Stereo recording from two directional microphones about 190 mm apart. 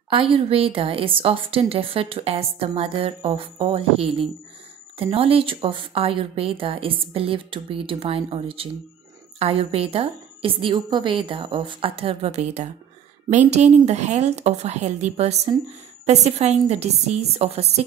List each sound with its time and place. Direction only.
0.1 s a woman's voice: 30° right (ahead or behind)